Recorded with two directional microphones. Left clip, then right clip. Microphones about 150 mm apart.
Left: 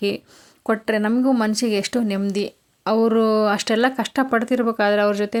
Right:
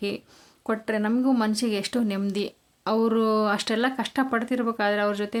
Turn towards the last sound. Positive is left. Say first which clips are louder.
# left 6 dB
turn(degrees=30)  # may be behind; listen again after turning